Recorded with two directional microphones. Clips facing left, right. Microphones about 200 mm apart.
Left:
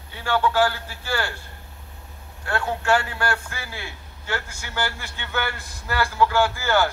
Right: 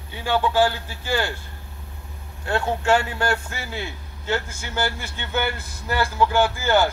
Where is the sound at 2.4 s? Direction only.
20° right (ahead or behind).